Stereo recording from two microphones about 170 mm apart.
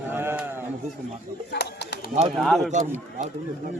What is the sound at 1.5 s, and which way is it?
Bird, 75° left (ahead or behind).